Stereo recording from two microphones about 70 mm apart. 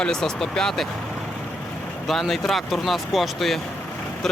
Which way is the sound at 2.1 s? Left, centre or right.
Centre.